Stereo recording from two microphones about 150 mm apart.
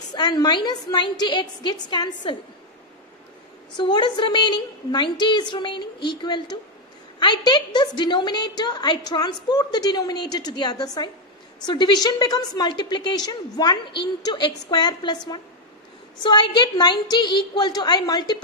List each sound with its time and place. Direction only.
0.1 s a woman's voice: 25° left (ahead or behind)
3.7 s a woman's voice: 30° left (ahead or behind)